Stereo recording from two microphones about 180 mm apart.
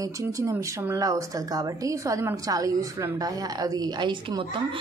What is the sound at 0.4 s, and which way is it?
A woman's voice, 15° right (ahead or behind).